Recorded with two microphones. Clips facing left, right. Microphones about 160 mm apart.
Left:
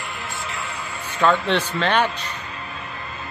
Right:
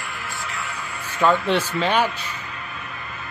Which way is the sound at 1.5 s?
10° right (ahead or behind).